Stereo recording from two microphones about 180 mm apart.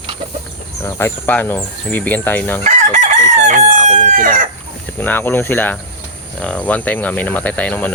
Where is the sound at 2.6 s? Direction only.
40° right (ahead or behind).